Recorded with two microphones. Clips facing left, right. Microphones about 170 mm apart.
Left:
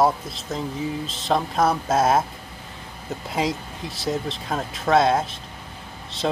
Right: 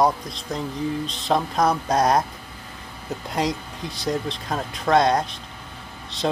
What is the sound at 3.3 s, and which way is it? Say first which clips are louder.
Speech: even; centre (ahead or behind).